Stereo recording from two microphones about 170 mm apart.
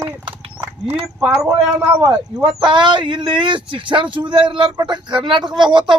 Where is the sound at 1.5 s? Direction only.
25° right (ahead or behind).